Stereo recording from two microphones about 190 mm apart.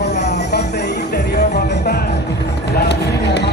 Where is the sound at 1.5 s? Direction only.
60° left (ahead or behind).